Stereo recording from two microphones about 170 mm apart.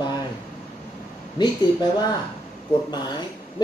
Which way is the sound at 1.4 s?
25° left (ahead or behind).